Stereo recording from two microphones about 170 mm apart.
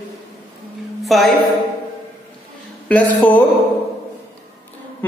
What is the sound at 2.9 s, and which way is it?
Speech, 10° left (ahead or behind).